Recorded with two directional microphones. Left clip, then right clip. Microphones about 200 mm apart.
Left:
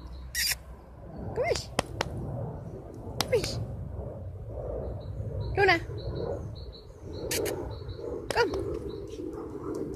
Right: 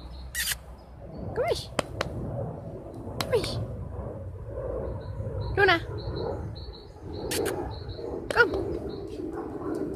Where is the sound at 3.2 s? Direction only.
35° left (ahead or behind).